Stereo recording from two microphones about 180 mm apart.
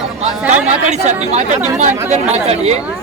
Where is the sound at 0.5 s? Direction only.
40° right (ahead or behind).